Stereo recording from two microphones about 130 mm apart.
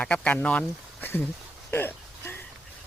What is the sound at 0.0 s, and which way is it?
Speech, 10° left (ahead or behind).